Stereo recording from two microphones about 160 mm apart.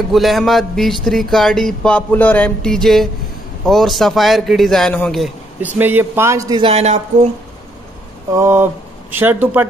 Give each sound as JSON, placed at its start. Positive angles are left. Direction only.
{"t": 0.1, "sound": "speech", "side_deg": 0}
{"t": 5.8, "sound": "a man's voice", "side_deg": -10}
{"t": 6.6, "sound": "speech", "side_deg": -40}
{"t": 8.3, "sound": "a man's voice", "side_deg": -15}